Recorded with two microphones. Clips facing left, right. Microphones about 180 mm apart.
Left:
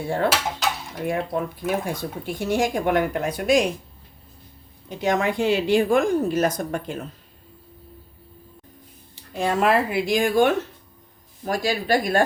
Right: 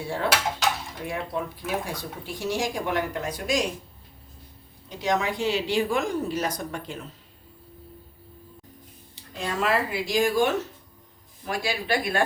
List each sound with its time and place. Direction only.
0.6 s dishes: centre (ahead or behind)
1.0 s speech: 50° left (ahead or behind)
4.9 s a woman's voice: 55° left (ahead or behind)
9.3 s speech: 55° left (ahead or behind)
11.4 s a woman's voice: 40° left (ahead or behind)